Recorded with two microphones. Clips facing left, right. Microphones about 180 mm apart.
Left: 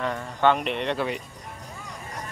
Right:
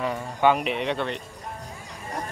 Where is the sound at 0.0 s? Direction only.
10° right (ahead or behind).